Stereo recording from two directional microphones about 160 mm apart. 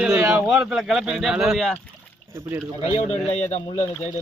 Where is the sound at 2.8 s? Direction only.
40° left (ahead or behind).